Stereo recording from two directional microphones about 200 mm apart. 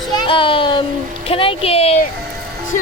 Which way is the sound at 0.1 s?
25° left (ahead or behind).